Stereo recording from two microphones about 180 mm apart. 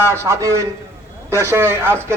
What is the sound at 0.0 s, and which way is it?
Speech, 15° right (ahead or behind).